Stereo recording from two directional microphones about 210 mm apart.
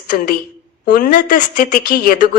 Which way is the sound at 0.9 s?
40° left (ahead or behind).